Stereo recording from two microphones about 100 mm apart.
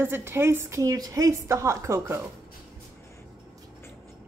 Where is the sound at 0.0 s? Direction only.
20° right (ahead or behind).